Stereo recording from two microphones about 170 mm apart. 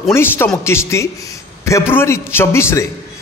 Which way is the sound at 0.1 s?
15° left (ahead or behind).